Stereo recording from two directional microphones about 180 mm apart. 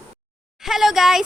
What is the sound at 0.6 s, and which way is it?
Speech, centre (ahead or behind).